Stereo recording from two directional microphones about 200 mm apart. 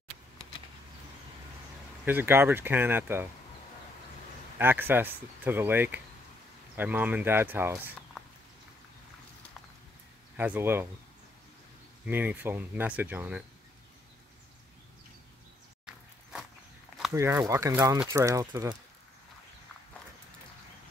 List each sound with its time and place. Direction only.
2.0 s speech: 10° right (ahead or behind)
4.6 s speech: 10° right (ahead or behind)
10.3 s speech: 10° right (ahead or behind)
12.1 s speech: 10° right (ahead or behind)
15.8 s walk: centre (ahead or behind)
17.1 s speech: 15° right (ahead or behind)